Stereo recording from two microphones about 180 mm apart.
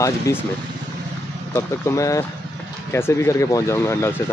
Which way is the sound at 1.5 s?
15° left (ahead or behind).